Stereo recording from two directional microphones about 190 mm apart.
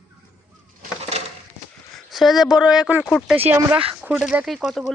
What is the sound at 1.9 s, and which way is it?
Speech, centre (ahead or behind).